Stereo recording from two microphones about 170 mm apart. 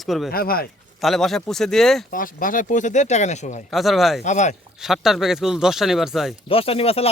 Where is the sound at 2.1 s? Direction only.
55° left (ahead or behind).